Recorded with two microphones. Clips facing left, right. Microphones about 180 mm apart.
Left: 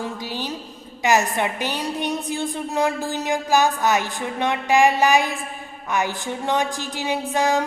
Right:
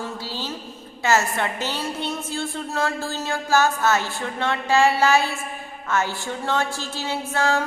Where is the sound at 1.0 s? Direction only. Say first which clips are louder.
Left 2 dB; 15° left (ahead or behind).